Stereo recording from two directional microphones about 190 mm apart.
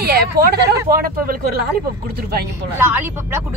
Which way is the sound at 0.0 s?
55° right (ahead or behind).